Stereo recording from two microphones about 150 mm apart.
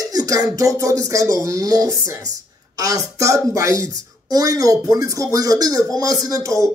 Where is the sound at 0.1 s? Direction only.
25° right (ahead or behind).